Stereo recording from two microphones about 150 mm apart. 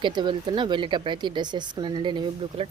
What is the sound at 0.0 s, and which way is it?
Speech, 30° right (ahead or behind).